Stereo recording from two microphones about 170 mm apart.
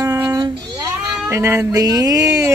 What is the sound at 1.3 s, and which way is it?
A woman's voice, 15° right (ahead or behind).